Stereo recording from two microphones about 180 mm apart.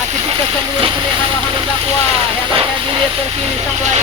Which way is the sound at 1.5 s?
30° right (ahead or behind).